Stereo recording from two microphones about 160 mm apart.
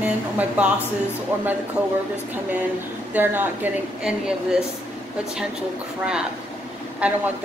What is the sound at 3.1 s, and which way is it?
Speech, 10° right (ahead or behind).